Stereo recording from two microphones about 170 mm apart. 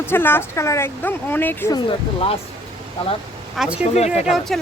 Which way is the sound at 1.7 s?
35° left (ahead or behind).